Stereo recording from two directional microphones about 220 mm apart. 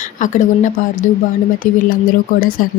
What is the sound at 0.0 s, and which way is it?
Speech, 35° left (ahead or behind).